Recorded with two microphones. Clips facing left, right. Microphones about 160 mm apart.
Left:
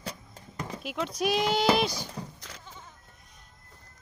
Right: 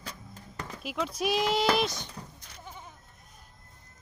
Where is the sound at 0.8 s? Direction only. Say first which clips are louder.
Left 1 dB; centre (ahead or behind).